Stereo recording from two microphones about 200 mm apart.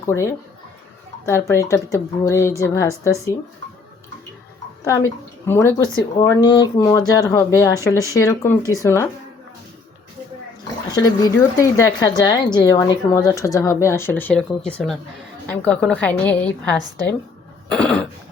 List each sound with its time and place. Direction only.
0.0 s a woman's voice: 15° left (ahead or behind)
4.9 s a woman's voice: 15° left (ahead or behind)
11.0 s a woman's voice: 15° left (ahead or behind)
17.7 s throat clearing: 5° left (ahead or behind)